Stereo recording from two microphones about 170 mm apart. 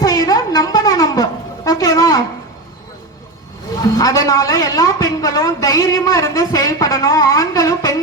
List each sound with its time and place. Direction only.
0.0 s wind instrument: 20° left (ahead or behind)
3.8 s a woman's voice: 20° left (ahead or behind)